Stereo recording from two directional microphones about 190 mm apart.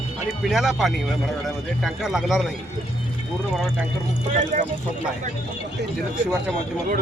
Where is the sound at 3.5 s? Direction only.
Centre (ahead or behind).